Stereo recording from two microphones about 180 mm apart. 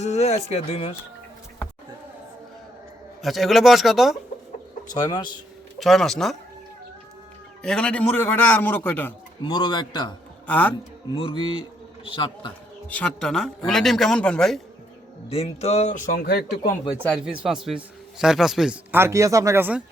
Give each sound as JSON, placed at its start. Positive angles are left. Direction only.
{"t": 0.0, "sound": "speech", "side_deg": 35}
{"t": 3.2, "sound": "speech", "side_deg": 0}
{"t": 4.9, "sound": "a man's voice", "side_deg": 20}
{"t": 5.8, "sound": "speech", "side_deg": 0}
{"t": 7.6, "sound": "a man's voice", "side_deg": 5}
{"t": 9.4, "sound": "a man's voice", "side_deg": 25}
{"t": 10.4, "sound": "a man's voice", "side_deg": 10}
{"t": 11.1, "sound": "a man's voice", "side_deg": 30}
{"t": 12.9, "sound": "speech", "side_deg": 5}
{"t": 15.3, "sound": "speech", "side_deg": 35}
{"t": 16.2, "sound": "speech", "side_deg": 60}
{"t": 17.2, "sound": "a man's voice", "side_deg": -5}